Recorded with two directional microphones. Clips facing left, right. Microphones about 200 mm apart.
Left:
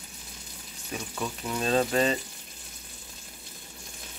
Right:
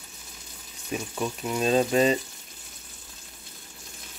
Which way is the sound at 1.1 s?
15° right (ahead or behind).